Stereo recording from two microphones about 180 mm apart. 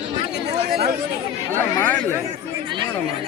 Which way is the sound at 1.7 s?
15° left (ahead or behind).